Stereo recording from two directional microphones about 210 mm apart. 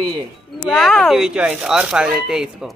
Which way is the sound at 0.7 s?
Centre (ahead or behind).